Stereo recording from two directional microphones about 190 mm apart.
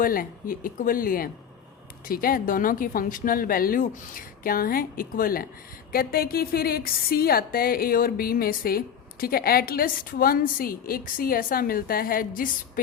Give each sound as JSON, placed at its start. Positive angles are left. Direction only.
{"t": 0.0, "sound": "a woman's voice", "side_deg": 45}